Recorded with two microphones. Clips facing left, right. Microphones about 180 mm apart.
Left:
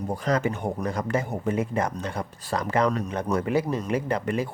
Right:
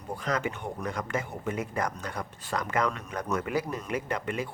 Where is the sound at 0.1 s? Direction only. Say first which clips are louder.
Left 5 dB; 35° left (ahead or behind).